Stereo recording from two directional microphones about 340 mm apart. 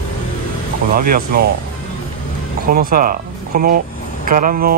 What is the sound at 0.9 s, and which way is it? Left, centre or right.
Speech, right.